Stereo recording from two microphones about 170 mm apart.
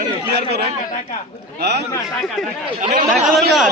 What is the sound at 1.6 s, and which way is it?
Speech, 75° right (ahead or behind).